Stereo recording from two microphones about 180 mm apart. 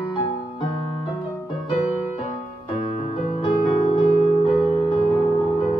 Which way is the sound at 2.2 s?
35° left (ahead or behind).